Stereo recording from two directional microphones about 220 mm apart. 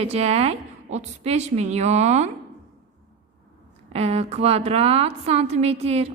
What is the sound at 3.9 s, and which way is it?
A woman's voice, 30° right (ahead or behind).